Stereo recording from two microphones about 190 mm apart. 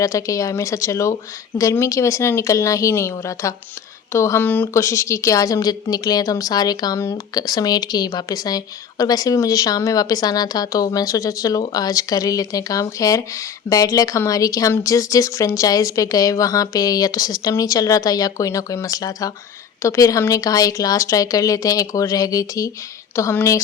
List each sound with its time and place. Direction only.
0.0 s speech: 15° left (ahead or behind)